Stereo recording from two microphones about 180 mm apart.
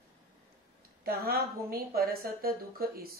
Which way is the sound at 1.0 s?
60° right (ahead or behind).